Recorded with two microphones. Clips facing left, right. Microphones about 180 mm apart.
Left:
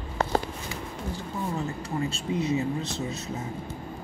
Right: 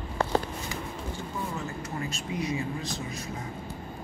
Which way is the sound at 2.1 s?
30° left (ahead or behind).